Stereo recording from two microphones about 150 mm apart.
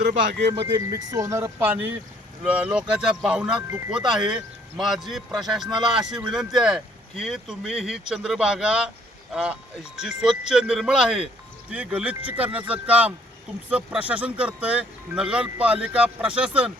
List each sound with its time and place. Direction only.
0.5 s speech: 30° right (ahead or behind); by 3.6 s 5° right (ahead or behind)
3.7 s speech: 20° right (ahead or behind)
3.9 s speech: 5° right (ahead or behind)